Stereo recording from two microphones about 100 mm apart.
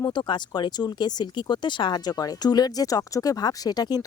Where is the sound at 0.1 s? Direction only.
50° left (ahead or behind).